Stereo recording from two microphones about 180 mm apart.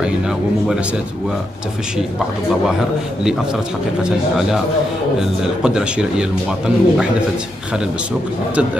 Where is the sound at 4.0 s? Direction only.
5° right (ahead or behind).